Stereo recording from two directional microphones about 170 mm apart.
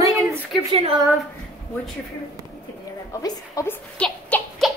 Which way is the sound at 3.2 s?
20° left (ahead or behind).